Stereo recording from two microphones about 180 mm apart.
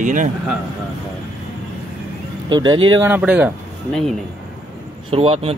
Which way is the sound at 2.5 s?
25° right (ahead or behind).